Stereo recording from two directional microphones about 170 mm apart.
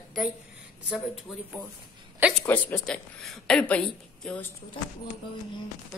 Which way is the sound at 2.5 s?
5° left (ahead or behind).